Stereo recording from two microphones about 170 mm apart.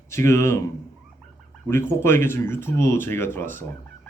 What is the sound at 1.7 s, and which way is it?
Speech, 15° left (ahead or behind).